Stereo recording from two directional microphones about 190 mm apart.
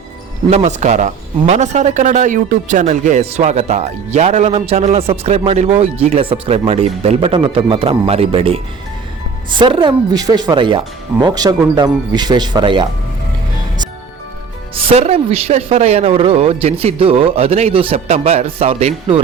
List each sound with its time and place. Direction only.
0.5 s a man's voice: 35° right (ahead or behind)
14.8 s a man's voice: 35° right (ahead or behind)